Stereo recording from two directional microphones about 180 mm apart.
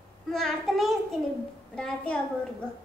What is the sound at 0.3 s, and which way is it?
A woman's voice, centre (ahead or behind).